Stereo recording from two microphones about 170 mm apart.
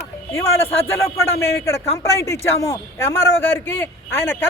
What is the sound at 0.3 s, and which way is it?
Speech, 15° left (ahead or behind).